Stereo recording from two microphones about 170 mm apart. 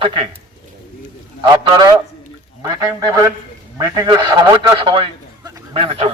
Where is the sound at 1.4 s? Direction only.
25° right (ahead or behind).